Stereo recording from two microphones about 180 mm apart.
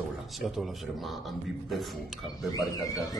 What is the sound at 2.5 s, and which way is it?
Speech, 20° left (ahead or behind).